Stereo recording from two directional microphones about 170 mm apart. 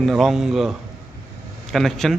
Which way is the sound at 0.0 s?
Centre (ahead or behind).